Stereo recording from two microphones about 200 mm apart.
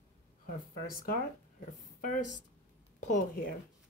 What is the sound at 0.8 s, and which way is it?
Speech, 45° left (ahead or behind).